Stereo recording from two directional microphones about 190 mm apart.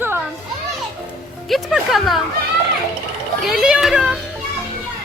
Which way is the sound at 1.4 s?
Centre (ahead or behind).